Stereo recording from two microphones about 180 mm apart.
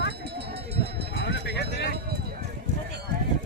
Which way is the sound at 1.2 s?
75° left (ahead or behind).